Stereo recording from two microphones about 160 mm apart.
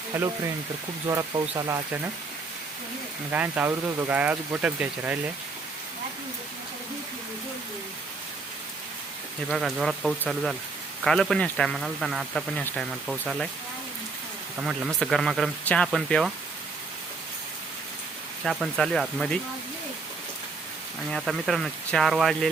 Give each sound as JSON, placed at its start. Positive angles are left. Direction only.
{"t": 0.1, "sound": "speech", "side_deg": -10}
{"t": 3.3, "sound": "speech", "side_deg": -10}
{"t": 9.5, "sound": "speech", "side_deg": 0}
{"t": 14.9, "sound": "speech", "side_deg": 0}
{"t": 18.4, "sound": "speech", "side_deg": 0}
{"t": 21.1, "sound": "speech", "side_deg": 0}